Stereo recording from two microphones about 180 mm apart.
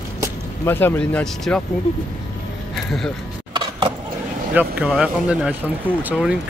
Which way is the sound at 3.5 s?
25° right (ahead or behind).